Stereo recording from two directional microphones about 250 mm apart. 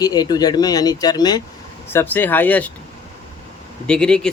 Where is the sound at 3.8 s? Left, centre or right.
Centre.